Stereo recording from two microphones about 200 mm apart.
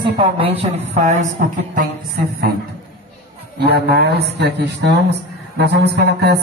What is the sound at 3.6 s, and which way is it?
Speech, 55° right (ahead or behind).